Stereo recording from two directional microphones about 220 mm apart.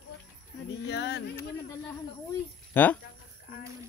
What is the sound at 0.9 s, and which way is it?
Speech, 50° left (ahead or behind).